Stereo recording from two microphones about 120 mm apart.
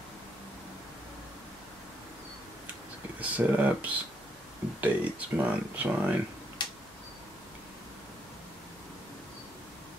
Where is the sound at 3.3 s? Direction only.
15° right (ahead or behind).